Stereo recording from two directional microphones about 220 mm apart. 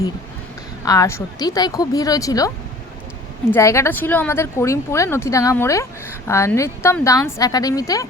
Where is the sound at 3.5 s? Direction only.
15° left (ahead or behind).